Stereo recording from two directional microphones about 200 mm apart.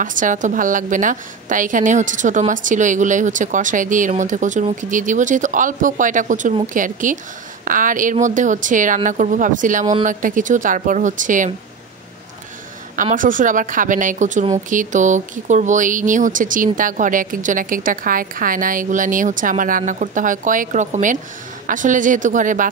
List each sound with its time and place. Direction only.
0.0 s a woman's voice: 40° right (ahead or behind)
12.9 s a woman's voice: 40° right (ahead or behind)